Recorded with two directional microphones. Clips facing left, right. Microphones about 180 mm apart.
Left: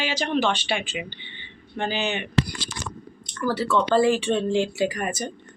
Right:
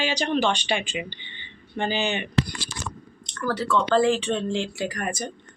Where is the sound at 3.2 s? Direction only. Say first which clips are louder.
Left 2 dB; 5° left (ahead or behind).